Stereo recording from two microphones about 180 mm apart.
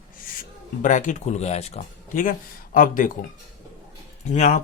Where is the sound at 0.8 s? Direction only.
45° left (ahead or behind).